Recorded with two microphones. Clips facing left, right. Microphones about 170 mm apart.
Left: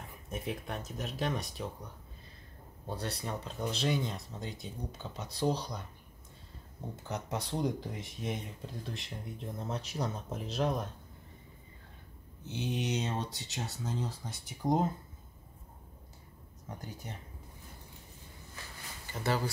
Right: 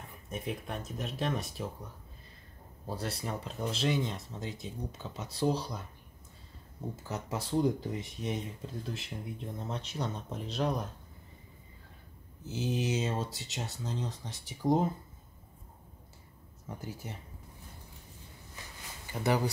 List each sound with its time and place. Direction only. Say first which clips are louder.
0.3 s speech: right 1 dB; centre (ahead or behind)
2.9 s speech: right 1 dB; centre (ahead or behind)
7.0 s speech: left 1 dB; 5° right (ahead or behind)
12.4 s speech: right 2 dB; 5° right (ahead or behind)
16.7 s speech: right 2 dB; 5° right (ahead or behind)
19.2 s speech: right 3 dB; 15° right (ahead or behind)